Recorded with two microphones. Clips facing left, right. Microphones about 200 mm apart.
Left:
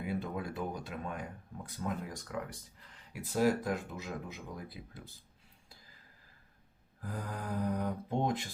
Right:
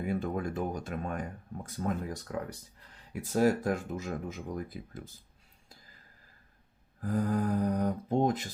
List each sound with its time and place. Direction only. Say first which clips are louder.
0.0 s speech: right 5 dB; 45° right (ahead or behind)
7.0 s speech: right 11 dB; 40° right (ahead or behind)